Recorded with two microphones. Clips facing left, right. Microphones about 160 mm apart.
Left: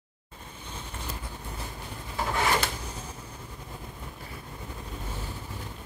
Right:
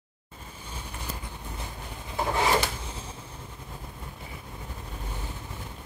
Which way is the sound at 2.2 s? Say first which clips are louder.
Right 2 dB; 15° right (ahead or behind).